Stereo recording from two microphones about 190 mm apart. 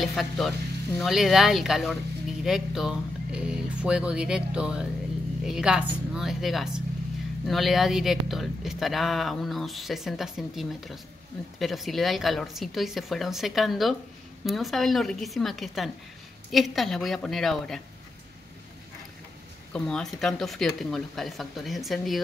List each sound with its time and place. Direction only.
0.0 s speech: centre (ahead or behind)
19.7 s speech: 5° left (ahead or behind)